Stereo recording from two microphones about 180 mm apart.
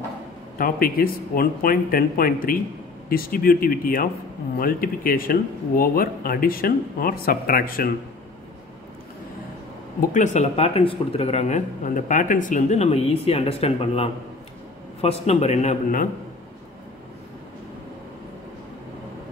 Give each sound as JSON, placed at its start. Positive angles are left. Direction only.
{"t": 0.6, "sound": "speech", "side_deg": 55}
{"t": 9.9, "sound": "speech", "side_deg": 45}